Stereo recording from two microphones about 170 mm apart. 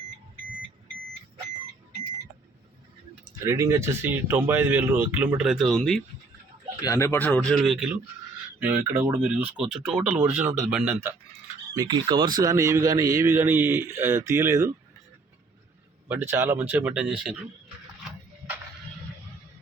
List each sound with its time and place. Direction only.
3.4 s speech: 15° right (ahead or behind); by 6.0 s centre (ahead or behind)
6.8 s speech: 15° left (ahead or behind); by 11.1 s 10° right (ahead or behind)
11.7 s speech: 25° right (ahead or behind)
16.0 s speech: 10° right (ahead or behind)